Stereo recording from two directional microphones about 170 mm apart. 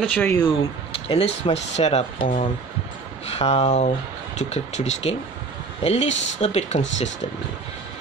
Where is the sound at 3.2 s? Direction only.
35° left (ahead or behind).